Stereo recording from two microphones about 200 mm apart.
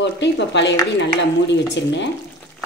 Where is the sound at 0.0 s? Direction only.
60° left (ahead or behind).